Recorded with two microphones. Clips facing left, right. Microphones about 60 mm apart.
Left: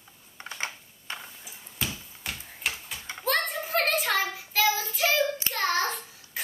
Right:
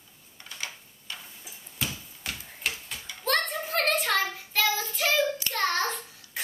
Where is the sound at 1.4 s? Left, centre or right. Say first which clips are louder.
Even; centre.